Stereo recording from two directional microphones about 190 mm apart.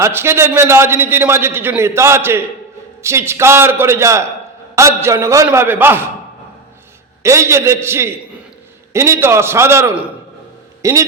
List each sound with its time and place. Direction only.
0.0 s a man's voice: 10° right (ahead or behind)
7.2 s a man's voice: 15° right (ahead or behind)